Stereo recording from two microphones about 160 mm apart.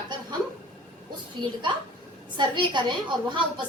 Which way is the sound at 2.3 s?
30° right (ahead or behind).